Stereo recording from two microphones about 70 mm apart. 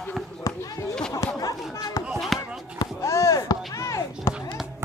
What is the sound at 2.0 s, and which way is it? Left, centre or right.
Chop, left.